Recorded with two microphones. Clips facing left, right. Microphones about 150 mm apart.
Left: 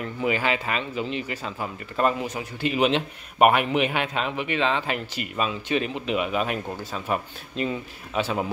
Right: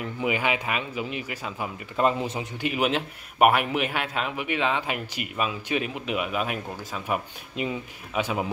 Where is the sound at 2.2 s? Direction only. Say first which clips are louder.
Even; 30° right (ahead or behind).